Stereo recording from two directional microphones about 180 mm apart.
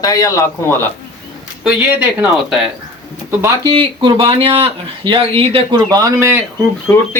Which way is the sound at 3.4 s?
15° right (ahead or behind).